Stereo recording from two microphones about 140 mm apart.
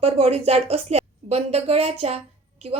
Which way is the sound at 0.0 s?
45° right (ahead or behind).